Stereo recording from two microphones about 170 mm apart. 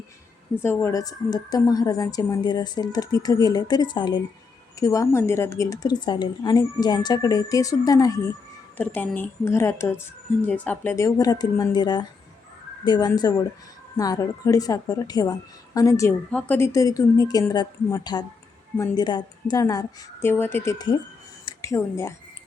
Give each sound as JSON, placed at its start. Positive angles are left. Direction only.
{"t": 0.5, "sound": "speech", "side_deg": 15}
{"t": 8.8, "sound": "a woman's voice", "side_deg": 10}